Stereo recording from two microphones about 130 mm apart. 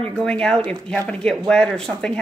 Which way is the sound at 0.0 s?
5° left (ahead or behind).